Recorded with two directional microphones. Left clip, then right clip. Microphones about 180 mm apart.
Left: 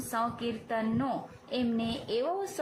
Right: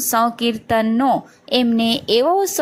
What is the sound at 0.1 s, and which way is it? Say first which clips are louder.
A woman's voice: right 15 dB; 40° right (ahead or behind).